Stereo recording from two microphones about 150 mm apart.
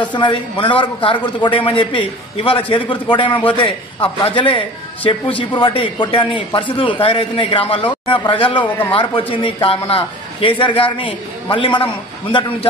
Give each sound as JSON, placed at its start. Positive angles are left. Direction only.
{"t": 0.0, "sound": "speech", "side_deg": 30}